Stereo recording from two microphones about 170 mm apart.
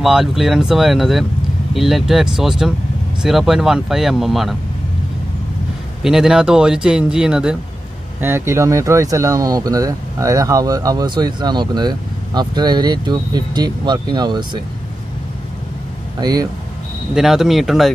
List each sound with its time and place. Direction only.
0.0 s speech: centre (ahead or behind)
6.0 s speech: 5° right (ahead or behind); by 14.6 s 25° right (ahead or behind)
16.2 s speech: 25° right (ahead or behind)
17.1 s speech: centre (ahead or behind)